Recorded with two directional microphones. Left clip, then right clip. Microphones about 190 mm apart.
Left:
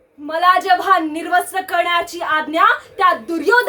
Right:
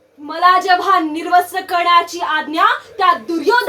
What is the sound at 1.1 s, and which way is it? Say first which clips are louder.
A woman's voice: right 3 dB; 25° left (ahead or behind).